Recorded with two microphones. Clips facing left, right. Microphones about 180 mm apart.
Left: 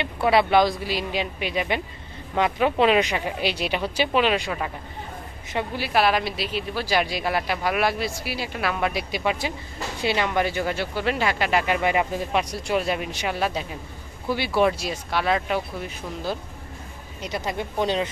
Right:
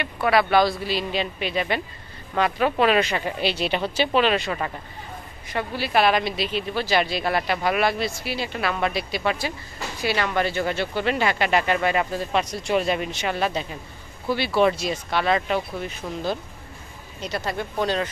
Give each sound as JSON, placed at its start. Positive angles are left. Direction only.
{"t": 0.0, "sound": "speech", "side_deg": 25}
{"t": 5.5, "sound": "a woman's voice", "side_deg": 20}
{"t": 5.9, "sound": "speech", "side_deg": 5}
{"t": 17.2, "sound": "speech", "side_deg": 15}